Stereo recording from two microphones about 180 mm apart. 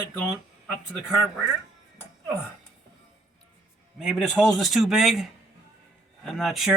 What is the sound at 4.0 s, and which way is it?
A man's voice, 5° right (ahead or behind).